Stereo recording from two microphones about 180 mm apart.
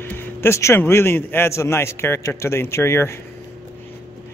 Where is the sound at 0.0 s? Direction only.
10° left (ahead or behind).